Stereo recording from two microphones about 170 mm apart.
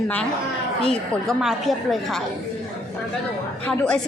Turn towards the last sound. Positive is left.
turn(degrees=5)  # may be behind; listen again after turning